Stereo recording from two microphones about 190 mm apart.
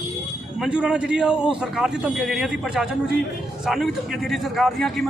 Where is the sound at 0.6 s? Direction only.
5° right (ahead or behind).